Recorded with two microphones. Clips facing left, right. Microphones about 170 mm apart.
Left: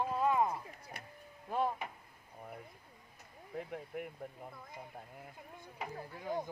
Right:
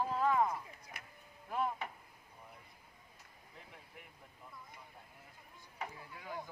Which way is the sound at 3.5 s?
60° left (ahead or behind).